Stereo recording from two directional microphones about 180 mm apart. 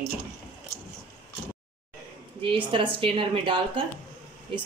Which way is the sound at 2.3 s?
30° right (ahead or behind).